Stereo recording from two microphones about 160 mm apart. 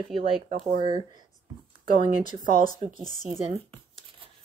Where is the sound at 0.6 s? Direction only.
35° right (ahead or behind).